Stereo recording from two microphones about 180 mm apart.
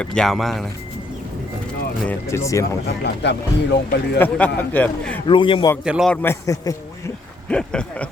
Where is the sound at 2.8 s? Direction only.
70° left (ahead or behind).